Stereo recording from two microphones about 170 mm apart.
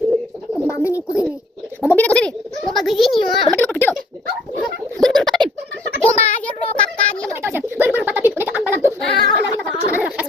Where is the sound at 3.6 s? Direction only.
10° left (ahead or behind).